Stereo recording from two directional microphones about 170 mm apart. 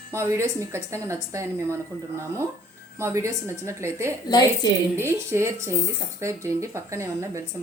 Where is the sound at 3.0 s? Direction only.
15° right (ahead or behind).